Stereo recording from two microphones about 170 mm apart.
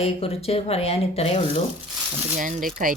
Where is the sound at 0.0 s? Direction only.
35° left (ahead or behind).